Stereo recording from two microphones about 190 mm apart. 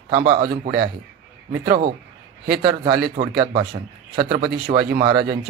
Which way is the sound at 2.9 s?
50° right (ahead or behind).